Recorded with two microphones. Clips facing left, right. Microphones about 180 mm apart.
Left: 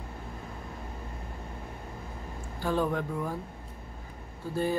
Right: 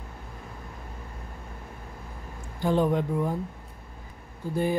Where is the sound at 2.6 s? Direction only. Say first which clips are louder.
Right 5 dB; 20° right (ahead or behind).